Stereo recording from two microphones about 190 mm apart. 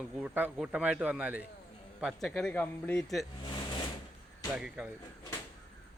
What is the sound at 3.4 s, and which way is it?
Vehicle, 25° left (ahead or behind).